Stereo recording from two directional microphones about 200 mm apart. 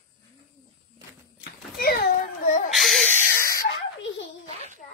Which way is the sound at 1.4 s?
50° left (ahead or behind).